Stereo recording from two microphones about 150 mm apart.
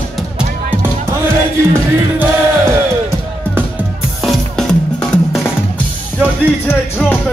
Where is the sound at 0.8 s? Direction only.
15° right (ahead or behind).